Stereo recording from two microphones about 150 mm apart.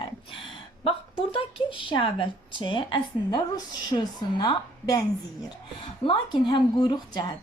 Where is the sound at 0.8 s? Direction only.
35° left (ahead or behind).